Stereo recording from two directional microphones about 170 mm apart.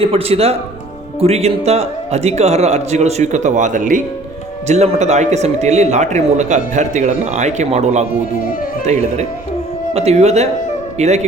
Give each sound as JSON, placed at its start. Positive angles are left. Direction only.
{"t": 0.0, "sound": "a man's voice", "side_deg": -35}